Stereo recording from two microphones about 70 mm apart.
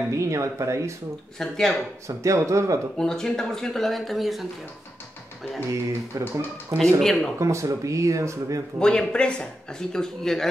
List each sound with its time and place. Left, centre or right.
0.1 s speech: right
1.4 s speech: centre
2.0 s speech: right
3.0 s speech: centre
5.7 s speech: right
7.0 s speech: centre
7.3 s speech: right
8.7 s speech: centre